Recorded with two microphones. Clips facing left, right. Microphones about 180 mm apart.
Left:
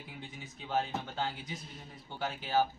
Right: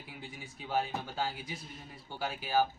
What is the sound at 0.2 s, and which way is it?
A man's voice, 10° right (ahead or behind).